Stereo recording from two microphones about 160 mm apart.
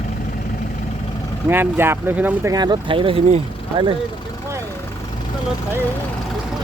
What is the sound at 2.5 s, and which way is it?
Speech, 25° right (ahead or behind).